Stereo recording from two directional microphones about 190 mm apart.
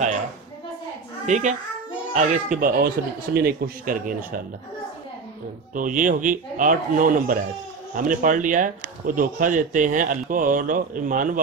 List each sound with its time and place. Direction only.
1.2 s a child's voice: 40° right (ahead or behind)
5.8 s speech: 45° right (ahead or behind)